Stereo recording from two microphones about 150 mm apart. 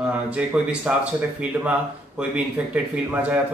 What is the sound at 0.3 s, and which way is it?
Speech, 10° right (ahead or behind).